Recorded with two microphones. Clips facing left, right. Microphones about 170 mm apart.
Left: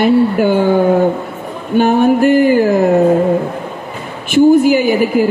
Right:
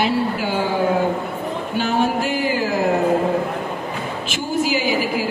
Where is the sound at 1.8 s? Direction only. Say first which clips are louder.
Left 10 dB; 55° left (ahead or behind).